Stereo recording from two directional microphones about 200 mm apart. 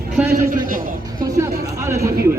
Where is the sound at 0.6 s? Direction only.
45° right (ahead or behind).